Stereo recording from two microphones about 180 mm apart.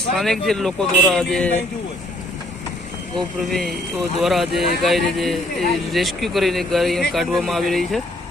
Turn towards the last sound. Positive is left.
turn(degrees=0)  # may be behind; listen again after turning